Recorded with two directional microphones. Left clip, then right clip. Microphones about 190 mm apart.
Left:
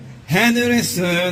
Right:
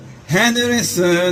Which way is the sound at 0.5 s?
25° left (ahead or behind).